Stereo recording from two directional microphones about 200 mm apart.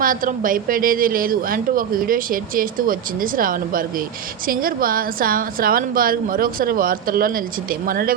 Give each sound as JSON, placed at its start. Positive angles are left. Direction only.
{"t": 0.0, "sound": "a woman's voice", "side_deg": -45}